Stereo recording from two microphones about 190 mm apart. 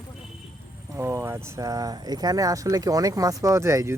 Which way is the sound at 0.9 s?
15° right (ahead or behind).